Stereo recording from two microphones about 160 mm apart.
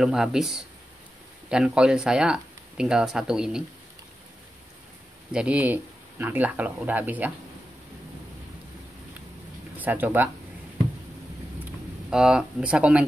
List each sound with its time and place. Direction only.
0.0 s speech: 5° right (ahead or behind)
5.3 s speech: 5° right (ahead or behind)
9.8 s speech: 10° right (ahead or behind)
12.1 s speech: 5° right (ahead or behind)